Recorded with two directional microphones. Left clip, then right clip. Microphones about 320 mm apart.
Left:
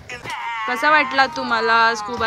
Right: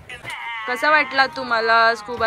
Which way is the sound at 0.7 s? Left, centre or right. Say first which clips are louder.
Left 1 dB; centre.